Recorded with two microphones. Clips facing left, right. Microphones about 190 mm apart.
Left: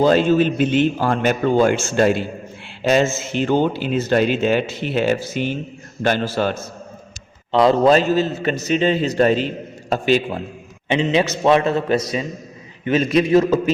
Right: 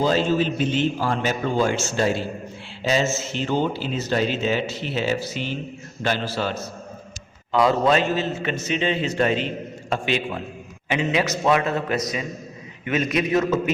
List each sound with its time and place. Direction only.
0.0 s a man's voice: 55° left (ahead or behind)
7.5 s a man's voice: 35° left (ahead or behind)
10.8 s a man's voice: 25° left (ahead or behind)